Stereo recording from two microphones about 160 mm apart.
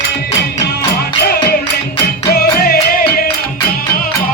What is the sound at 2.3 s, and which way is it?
Music, 70° left (ahead or behind).